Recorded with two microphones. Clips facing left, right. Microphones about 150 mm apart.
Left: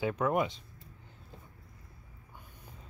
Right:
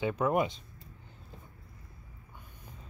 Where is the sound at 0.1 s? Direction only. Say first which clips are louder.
Right 1 dB; 15° right (ahead or behind).